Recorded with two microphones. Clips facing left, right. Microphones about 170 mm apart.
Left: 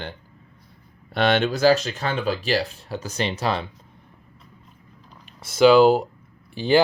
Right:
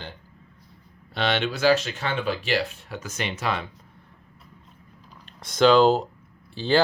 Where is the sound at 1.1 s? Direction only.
50° left (ahead or behind); by 3.6 s 35° left (ahead or behind).